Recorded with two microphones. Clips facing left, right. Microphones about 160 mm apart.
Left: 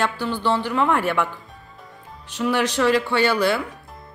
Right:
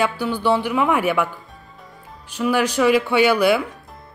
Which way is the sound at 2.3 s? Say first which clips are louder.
Right 2 dB; 5° right (ahead or behind).